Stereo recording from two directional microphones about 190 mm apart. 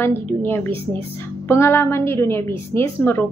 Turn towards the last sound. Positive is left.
turn(degrees=10)  # may be behind; listen again after turning